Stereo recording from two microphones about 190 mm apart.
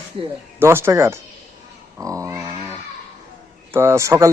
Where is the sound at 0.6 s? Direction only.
15° right (ahead or behind).